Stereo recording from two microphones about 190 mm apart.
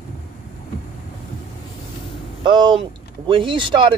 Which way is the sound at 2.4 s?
25° right (ahead or behind).